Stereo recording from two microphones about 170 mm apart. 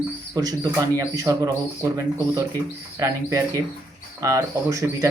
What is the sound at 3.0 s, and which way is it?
Speech, 20° right (ahead or behind).